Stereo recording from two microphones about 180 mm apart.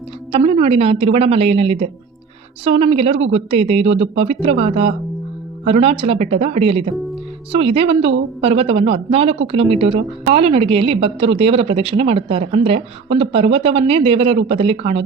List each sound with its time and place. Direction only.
0.3 s a woman's voice: 35° right (ahead or behind)